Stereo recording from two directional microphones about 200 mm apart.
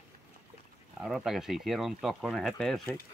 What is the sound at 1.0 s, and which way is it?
Speech, centre (ahead or behind).